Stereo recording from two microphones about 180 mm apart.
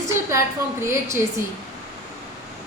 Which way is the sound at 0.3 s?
15° right (ahead or behind).